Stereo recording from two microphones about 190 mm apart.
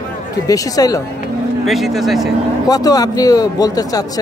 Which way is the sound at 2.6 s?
20° left (ahead or behind).